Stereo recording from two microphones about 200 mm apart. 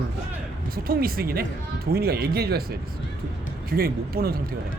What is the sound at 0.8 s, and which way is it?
Speech, 50° right (ahead or behind).